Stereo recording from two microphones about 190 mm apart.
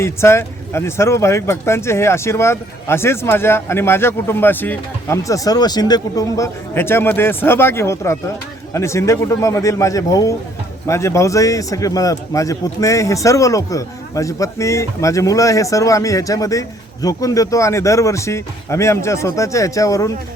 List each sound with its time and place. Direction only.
0.0 s a man's voice: 15° left (ahead or behind)